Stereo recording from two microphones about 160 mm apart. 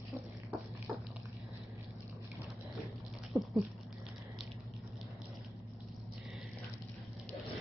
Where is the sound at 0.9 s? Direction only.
10° right (ahead or behind).